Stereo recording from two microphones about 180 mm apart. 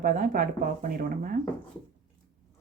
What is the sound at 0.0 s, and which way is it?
Speech, 50° right (ahead or behind).